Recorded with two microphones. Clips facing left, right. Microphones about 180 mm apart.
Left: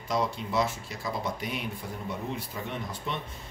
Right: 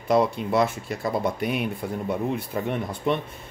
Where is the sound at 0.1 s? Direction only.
60° right (ahead or behind).